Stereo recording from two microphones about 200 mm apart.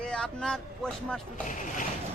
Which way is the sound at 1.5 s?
40° left (ahead or behind).